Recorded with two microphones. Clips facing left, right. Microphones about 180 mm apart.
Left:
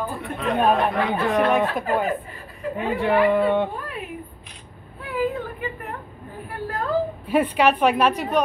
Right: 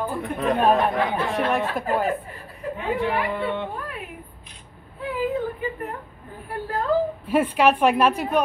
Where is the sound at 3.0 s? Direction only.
65° left (ahead or behind).